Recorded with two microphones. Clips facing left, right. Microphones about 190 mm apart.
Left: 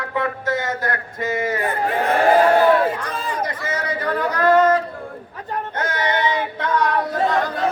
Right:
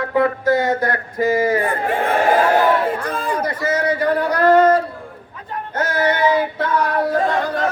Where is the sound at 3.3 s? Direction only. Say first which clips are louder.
Right 6 dB; 30° right (ahead or behind).